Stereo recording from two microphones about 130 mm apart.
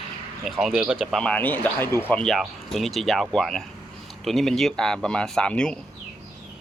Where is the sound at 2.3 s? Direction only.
Centre (ahead or behind).